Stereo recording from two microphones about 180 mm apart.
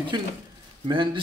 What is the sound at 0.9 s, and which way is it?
Speech, 25° right (ahead or behind).